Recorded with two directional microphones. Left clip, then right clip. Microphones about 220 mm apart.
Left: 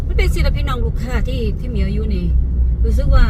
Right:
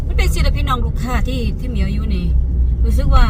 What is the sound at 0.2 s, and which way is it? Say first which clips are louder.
Vehicle: even; 15° right (ahead or behind).